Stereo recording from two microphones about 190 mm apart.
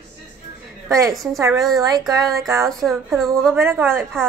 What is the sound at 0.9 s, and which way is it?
A woman's voice, 15° right (ahead or behind).